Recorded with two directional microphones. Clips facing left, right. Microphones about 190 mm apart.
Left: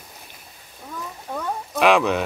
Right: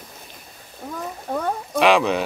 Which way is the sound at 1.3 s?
40° right (ahead or behind).